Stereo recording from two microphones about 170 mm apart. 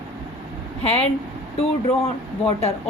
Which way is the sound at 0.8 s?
40° left (ahead or behind).